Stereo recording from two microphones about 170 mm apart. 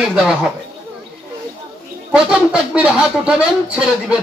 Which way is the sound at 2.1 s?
5° right (ahead or behind).